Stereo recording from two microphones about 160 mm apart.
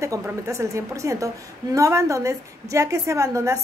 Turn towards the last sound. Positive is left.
turn(degrees=-20)  # may be behind; listen again after turning